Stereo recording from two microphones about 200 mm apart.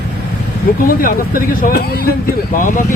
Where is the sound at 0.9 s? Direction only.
45° left (ahead or behind).